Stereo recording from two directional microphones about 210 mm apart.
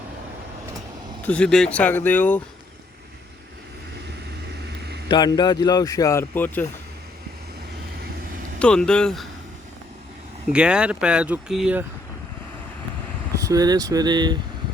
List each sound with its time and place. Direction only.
1.2 s speech: 5° left (ahead or behind)
5.0 s speech: 20° left (ahead or behind)
8.5 s speech: 5° left (ahead or behind)
10.5 s speech: 5° right (ahead or behind)
13.4 s speech: 15° right (ahead or behind)